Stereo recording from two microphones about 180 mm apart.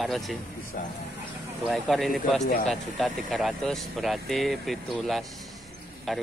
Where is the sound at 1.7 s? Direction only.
Centre (ahead or behind).